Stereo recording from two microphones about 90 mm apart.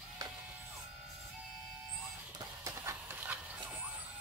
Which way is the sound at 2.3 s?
35° right (ahead or behind).